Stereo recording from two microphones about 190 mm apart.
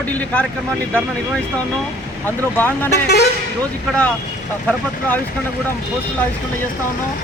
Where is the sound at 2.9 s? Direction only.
60° left (ahead or behind).